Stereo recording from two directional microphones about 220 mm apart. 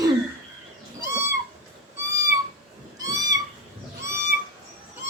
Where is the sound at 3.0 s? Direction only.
15° right (ahead or behind).